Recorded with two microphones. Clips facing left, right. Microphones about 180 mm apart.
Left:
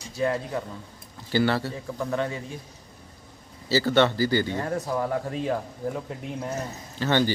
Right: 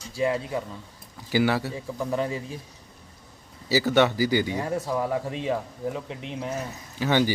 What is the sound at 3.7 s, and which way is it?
Speech, 15° right (ahead or behind).